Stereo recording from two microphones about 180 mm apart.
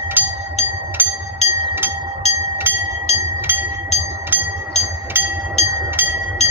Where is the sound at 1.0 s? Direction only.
10° right (ahead or behind).